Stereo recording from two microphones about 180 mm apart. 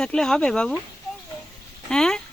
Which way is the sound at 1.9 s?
5° left (ahead or behind).